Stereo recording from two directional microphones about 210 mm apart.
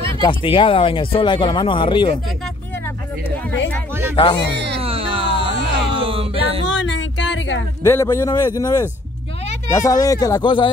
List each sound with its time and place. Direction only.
0.1 s speech: 25° left (ahead or behind)
4.2 s speech: 20° left (ahead or behind)
4.7 s music: 25° right (ahead or behind)
6.7 s music: 60° left (ahead or behind)
7.8 s a man's voice: 10° left (ahead or behind)